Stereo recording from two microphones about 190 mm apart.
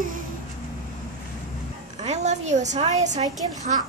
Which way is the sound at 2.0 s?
35° right (ahead or behind).